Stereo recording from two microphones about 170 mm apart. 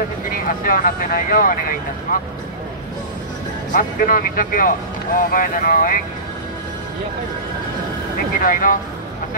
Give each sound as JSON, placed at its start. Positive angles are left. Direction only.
{"t": 0.3, "sound": "speech", "side_deg": 55}
{"t": 3.7, "sound": "speech", "side_deg": 55}
{"t": 8.4, "sound": "speech", "side_deg": 55}